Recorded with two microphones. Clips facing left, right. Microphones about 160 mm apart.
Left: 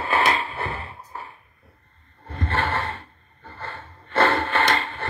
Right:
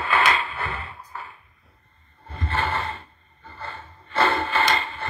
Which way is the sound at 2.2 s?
60° left (ahead or behind).